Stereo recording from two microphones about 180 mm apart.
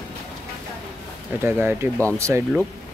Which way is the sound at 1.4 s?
10° right (ahead or behind).